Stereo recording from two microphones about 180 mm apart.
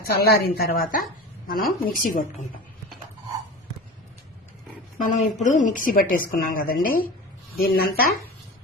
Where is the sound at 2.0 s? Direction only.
45° left (ahead or behind).